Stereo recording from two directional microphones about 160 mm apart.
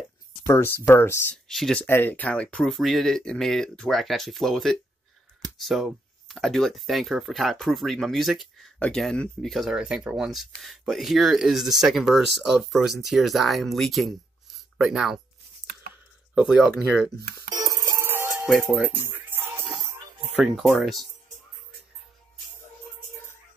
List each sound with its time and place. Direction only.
0.5 s speech: 15° left (ahead or behind)
1.5 s speech: 5° left (ahead or behind)
16.3 s speech: 5° right (ahead or behind)
17.5 s music: 20° right (ahead or behind)
18.5 s speech: centre (ahead or behind)
18.9 s music: 10° right (ahead or behind)
20.5 s speech: centre (ahead or behind)